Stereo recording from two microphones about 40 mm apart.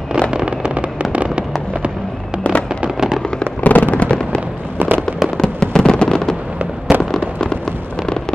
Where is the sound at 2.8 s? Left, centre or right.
Centre.